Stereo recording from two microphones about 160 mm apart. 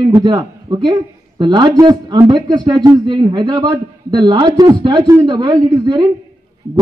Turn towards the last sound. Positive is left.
turn(degrees=-30)  # may be behind; listen again after turning